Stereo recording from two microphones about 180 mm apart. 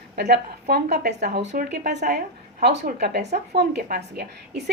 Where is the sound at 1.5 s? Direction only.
45° right (ahead or behind).